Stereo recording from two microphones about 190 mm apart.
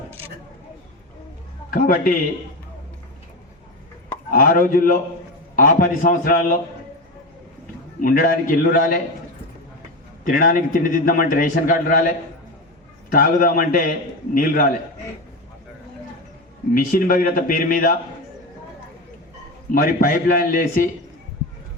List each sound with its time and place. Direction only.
1.7 s a man's voice: 50° left (ahead or behind)
4.3 s a man's voice: 45° left (ahead or behind)
8.0 s a man's voice: 45° left (ahead or behind)
10.2 s a man's voice: 45° left (ahead or behind)
16.7 s a man's voice: 50° left (ahead or behind)
19.7 s a man's voice: 50° left (ahead or behind)